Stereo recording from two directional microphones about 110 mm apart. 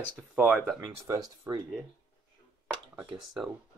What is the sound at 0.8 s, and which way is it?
Speech, 35° right (ahead or behind).